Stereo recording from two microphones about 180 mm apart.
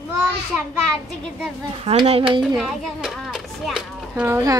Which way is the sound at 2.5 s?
Centre (ahead or behind).